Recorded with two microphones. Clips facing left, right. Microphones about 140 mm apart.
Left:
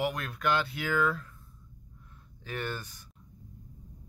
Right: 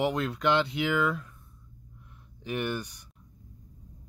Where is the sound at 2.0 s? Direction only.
15° right (ahead or behind).